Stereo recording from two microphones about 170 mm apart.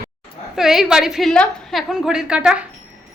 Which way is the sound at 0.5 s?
Centre (ahead or behind).